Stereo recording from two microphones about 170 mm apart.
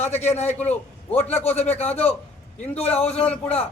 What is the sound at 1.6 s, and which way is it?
A man's voice, 40° left (ahead or behind).